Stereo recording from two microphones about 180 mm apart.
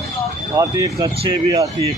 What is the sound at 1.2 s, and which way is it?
Speech, 35° right (ahead or behind).